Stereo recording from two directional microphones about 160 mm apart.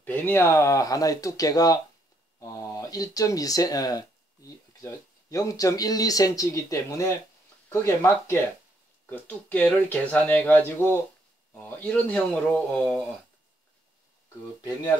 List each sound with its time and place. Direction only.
0.0 s speech: 10° left (ahead or behind)